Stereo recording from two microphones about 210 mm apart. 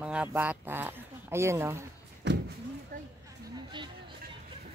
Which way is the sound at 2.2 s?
55° right (ahead or behind).